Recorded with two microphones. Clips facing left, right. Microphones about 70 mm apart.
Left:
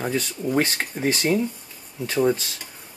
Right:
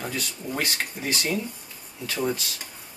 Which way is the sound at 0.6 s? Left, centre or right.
Left.